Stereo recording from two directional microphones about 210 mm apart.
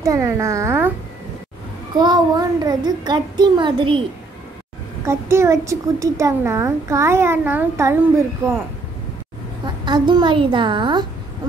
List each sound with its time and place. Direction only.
0.0 s a woman's voice: 15° right (ahead or behind)
2.0 s a child's voice: 20° right (ahead or behind)
5.0 s a woman's voice: 15° right (ahead or behind)
9.8 s a child's voice: 20° right (ahead or behind)